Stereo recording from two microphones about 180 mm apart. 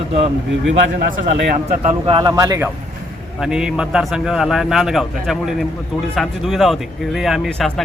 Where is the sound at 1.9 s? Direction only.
30° right (ahead or behind).